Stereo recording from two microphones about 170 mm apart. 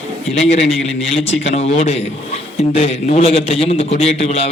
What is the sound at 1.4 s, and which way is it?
A man's voice, 40° left (ahead or behind).